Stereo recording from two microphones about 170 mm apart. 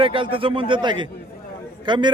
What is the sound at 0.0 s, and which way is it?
A man's voice, 30° right (ahead or behind).